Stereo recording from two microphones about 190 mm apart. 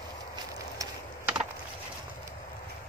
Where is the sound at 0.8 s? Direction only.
20° right (ahead or behind).